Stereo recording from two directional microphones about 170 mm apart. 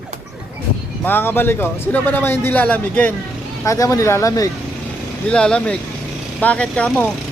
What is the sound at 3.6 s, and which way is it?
Speech, 20° left (ahead or behind).